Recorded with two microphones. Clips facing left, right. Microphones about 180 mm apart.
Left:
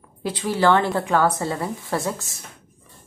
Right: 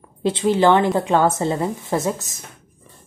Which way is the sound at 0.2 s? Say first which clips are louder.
Right 5 dB; 25° right (ahead or behind).